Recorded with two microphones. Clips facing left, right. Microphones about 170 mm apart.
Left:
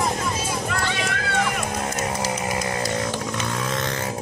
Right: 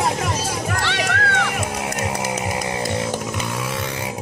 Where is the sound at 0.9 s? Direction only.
75° right (ahead or behind).